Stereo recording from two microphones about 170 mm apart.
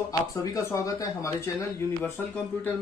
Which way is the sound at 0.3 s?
20° left (ahead or behind).